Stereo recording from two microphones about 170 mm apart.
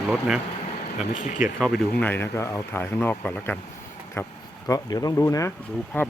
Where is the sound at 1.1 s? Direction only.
50° left (ahead or behind).